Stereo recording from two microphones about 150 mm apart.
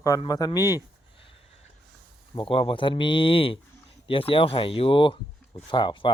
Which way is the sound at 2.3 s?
35° left (ahead or behind).